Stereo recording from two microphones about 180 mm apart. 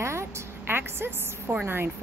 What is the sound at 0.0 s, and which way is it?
A woman's voice, 15° right (ahead or behind).